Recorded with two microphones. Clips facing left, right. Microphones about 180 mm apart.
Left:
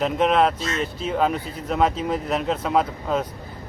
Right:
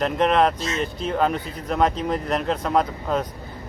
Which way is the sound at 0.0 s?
Centre (ahead or behind).